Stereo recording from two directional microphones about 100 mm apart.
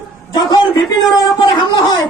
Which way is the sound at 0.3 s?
45° left (ahead or behind).